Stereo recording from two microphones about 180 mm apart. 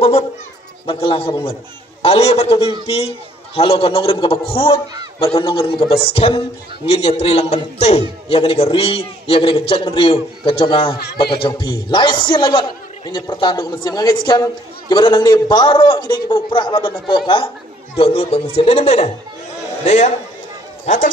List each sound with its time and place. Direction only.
0.8 s a man's voice: 30° left (ahead or behind)